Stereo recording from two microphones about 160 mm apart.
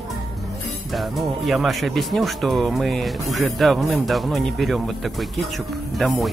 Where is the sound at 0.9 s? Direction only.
Centre (ahead or behind).